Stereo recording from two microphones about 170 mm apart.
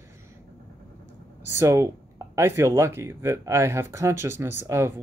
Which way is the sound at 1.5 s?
15° right (ahead or behind).